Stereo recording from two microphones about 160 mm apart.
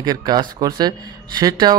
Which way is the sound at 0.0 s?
25° right (ahead or behind).